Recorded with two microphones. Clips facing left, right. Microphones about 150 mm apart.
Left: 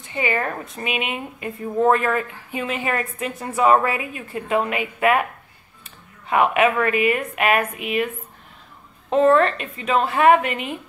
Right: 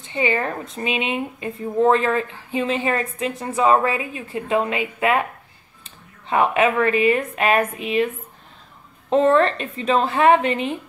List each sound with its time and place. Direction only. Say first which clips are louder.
0.0 s a woman's voice: right 2 dB; 25° right (ahead or behind)
6.5 s a woman's voice: right 1 dB; 30° right (ahead or behind)
9.1 s a woman's voice: even; 30° right (ahead or behind)